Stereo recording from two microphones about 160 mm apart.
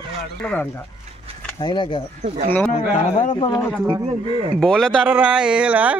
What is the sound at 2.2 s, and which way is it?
Speech, 50° right (ahead or behind).